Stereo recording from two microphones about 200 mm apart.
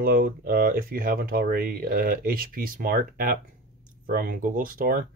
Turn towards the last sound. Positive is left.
turn(degrees=-45)  # may be behind; listen again after turning